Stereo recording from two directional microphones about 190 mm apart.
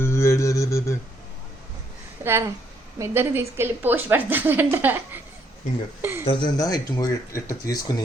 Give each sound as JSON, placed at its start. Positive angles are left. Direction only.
{"t": 0.0, "sound": "humming", "side_deg": 15}
{"t": 2.2, "sound": "speech", "side_deg": -15}
{"t": 6.0, "sound": "a sound", "side_deg": -10}
{"t": 6.2, "sound": "speech", "side_deg": 20}